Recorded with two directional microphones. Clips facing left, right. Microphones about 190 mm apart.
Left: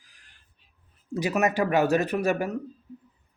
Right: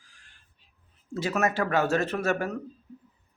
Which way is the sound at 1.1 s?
15° left (ahead or behind).